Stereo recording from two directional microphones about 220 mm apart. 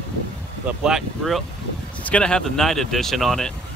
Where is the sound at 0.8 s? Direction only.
Centre (ahead or behind).